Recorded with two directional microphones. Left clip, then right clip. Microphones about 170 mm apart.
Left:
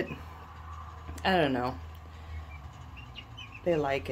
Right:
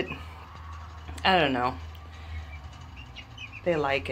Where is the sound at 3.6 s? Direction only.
20° left (ahead or behind).